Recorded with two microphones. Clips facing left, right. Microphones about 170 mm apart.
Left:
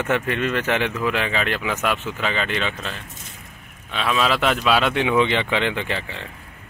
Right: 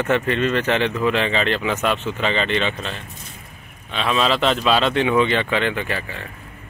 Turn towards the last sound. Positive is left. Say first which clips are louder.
# right 1 dB
turn(degrees=20)  # may be behind; listen again after turning